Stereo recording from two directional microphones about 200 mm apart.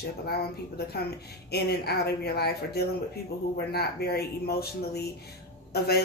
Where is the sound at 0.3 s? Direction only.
50° left (ahead or behind).